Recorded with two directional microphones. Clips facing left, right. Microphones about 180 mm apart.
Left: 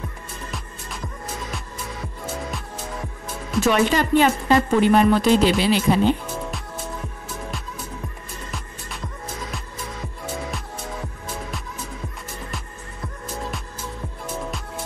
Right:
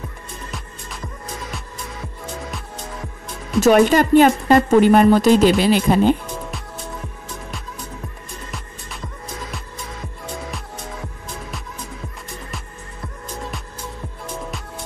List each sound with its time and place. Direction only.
0.5 s music: centre (ahead or behind)
3.6 s speech: 45° right (ahead or behind)
8.5 s music: centre (ahead or behind)
13.0 s music: centre (ahead or behind)